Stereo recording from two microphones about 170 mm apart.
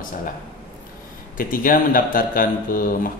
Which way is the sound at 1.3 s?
55° left (ahead or behind).